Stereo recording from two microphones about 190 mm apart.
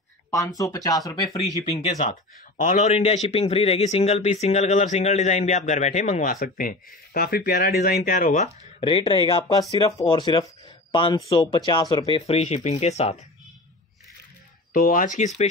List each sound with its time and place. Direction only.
0.3 s speech: 20° left (ahead or behind)
1.6 s speech: 30° left (ahead or behind)
8.7 s speech: 30° left (ahead or behind)
14.7 s speech: 45° left (ahead or behind)